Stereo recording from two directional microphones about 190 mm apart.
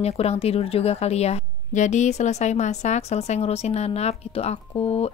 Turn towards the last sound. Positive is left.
turn(degrees=30)  # may be behind; listen again after turning